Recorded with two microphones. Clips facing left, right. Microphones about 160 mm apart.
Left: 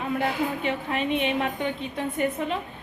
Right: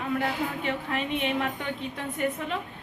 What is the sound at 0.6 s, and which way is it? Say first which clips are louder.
A woman's voice: left 3 dB; 20° left (ahead or behind).